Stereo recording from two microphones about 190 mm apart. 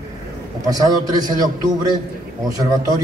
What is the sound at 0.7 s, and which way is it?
A man's voice, 20° right (ahead or behind).